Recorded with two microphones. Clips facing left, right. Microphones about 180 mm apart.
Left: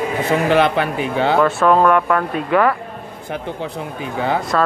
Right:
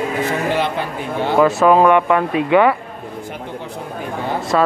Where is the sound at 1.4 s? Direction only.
5° right (ahead or behind).